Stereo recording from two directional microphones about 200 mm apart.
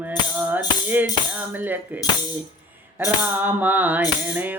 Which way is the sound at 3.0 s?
10° right (ahead or behind).